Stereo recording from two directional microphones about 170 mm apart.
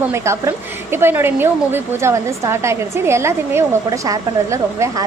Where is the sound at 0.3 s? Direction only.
15° right (ahead or behind).